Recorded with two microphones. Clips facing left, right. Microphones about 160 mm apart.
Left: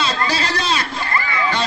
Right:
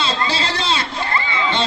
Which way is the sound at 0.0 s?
25° right (ahead or behind).